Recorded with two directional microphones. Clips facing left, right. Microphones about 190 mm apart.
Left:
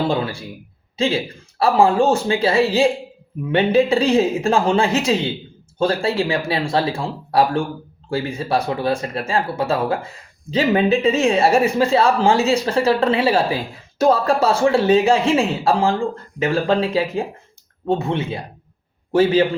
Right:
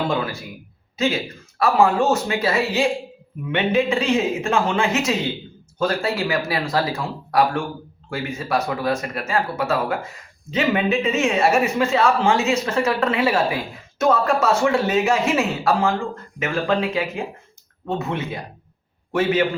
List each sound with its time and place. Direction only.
0.1 s speech: 30° left (ahead or behind)